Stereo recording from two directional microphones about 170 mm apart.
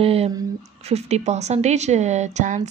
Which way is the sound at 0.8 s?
40° right (ahead or behind).